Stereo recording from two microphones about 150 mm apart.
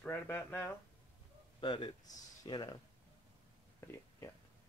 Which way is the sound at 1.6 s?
30° left (ahead or behind).